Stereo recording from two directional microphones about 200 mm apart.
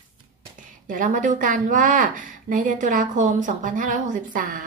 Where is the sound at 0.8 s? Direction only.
40° right (ahead or behind).